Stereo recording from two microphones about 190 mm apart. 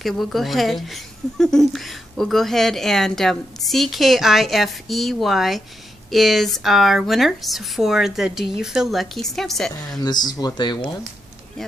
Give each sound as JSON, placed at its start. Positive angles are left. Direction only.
{"t": 0.0, "sound": "speech", "side_deg": 0}
{"t": 10.0, "sound": "speech", "side_deg": 20}